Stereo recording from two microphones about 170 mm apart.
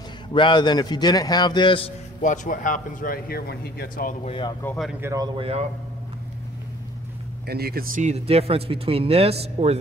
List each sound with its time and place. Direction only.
0.3 s a man's voice: 30° left (ahead or behind)
2.2 s speech: 50° left (ahead or behind)
4.6 s speech: 10° left (ahead or behind)
5.0 s speech: 20° right (ahead or behind)
7.4 s speech: 65° right (ahead or behind)
8.0 s speech: 40° right (ahead or behind)